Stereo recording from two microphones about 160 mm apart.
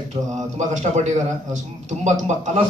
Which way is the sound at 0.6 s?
45° right (ahead or behind).